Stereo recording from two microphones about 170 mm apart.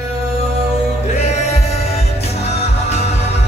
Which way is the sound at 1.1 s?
40° left (ahead or behind).